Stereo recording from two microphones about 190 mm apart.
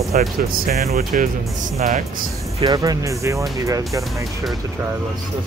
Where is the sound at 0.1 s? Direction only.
45° right (ahead or behind).